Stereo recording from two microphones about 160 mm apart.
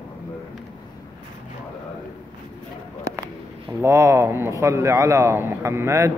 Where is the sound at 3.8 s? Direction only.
15° right (ahead or behind).